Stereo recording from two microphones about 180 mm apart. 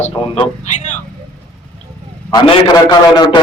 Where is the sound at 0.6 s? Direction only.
40° left (ahead or behind).